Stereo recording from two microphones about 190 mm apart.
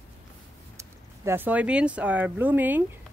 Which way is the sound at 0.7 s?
15° right (ahead or behind).